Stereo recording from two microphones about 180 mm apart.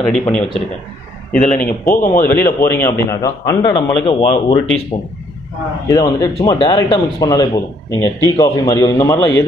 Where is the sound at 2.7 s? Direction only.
15° left (ahead or behind).